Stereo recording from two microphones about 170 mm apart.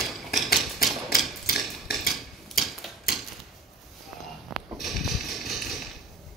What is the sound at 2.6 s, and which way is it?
Mechanisms, centre (ahead or behind).